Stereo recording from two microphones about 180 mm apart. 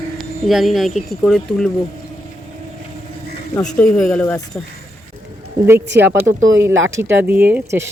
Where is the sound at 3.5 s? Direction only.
5° left (ahead or behind).